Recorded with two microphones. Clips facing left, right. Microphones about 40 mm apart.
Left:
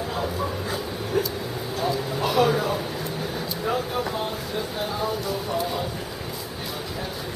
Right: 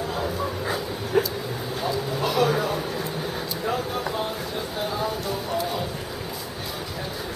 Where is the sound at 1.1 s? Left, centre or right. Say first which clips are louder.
Right 3 dB; right.